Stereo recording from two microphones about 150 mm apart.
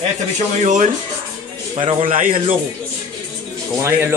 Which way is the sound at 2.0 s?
60° right (ahead or behind).